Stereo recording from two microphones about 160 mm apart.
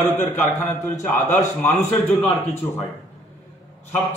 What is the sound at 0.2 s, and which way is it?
A man's voice, 15° left (ahead or behind).